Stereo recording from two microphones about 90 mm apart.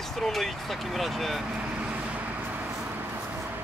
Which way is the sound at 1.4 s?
15° right (ahead or behind).